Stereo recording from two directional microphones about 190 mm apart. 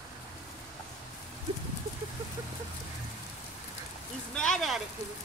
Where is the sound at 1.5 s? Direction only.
30° right (ahead or behind).